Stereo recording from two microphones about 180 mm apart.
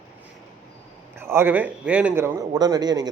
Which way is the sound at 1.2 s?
15° right (ahead or behind).